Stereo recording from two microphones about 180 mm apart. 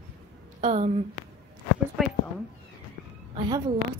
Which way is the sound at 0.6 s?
40° right (ahead or behind).